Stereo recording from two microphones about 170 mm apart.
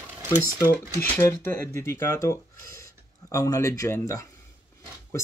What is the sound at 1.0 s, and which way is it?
Speech, 10° left (ahead or behind).